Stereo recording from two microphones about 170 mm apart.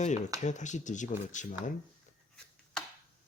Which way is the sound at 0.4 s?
45° left (ahead or behind).